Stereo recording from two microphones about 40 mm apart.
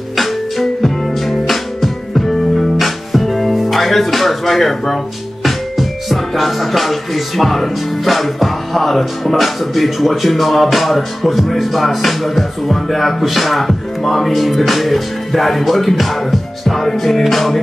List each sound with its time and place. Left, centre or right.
0.1 s music: centre